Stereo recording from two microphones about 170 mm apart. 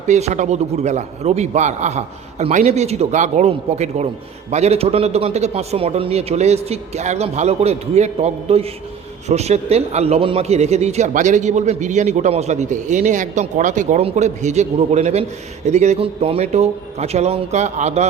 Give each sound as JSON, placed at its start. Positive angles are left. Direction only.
{"t": 0.1, "sound": "a man's voice", "side_deg": -40}